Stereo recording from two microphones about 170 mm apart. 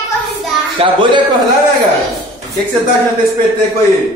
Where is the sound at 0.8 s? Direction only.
30° right (ahead or behind).